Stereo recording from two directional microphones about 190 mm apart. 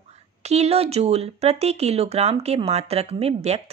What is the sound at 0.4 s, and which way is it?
A woman's voice, 35° right (ahead or behind).